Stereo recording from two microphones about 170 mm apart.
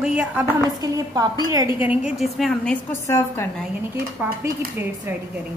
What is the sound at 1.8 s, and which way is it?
A woman's voice, 5° right (ahead or behind).